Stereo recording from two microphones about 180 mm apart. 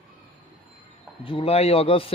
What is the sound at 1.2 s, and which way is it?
Speech, 30° left (ahead or behind).